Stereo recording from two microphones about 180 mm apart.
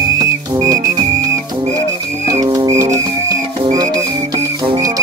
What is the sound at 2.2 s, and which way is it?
Music, 20° right (ahead or behind).